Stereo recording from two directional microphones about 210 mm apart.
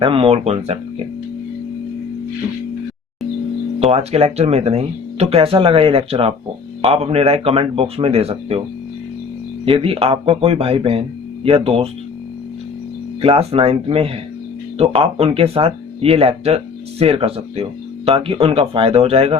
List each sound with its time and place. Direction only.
0.0 s speech: 25° right (ahead or behind)
3.8 s speech: 30° right (ahead or behind)
9.6 s speech: 25° right (ahead or behind)
13.2 s speech: 25° right (ahead or behind)